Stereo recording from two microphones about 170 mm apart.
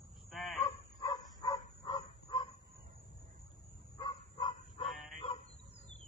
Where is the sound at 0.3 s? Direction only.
Centre (ahead or behind).